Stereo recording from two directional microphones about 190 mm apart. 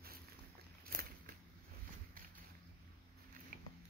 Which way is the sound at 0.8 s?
50° right (ahead or behind).